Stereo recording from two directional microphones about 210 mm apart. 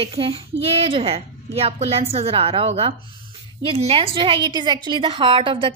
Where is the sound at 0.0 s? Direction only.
25° right (ahead or behind).